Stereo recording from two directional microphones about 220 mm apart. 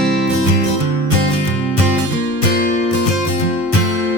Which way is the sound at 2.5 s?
40° left (ahead or behind).